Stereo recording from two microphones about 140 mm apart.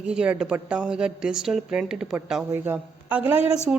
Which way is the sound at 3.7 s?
10° right (ahead or behind).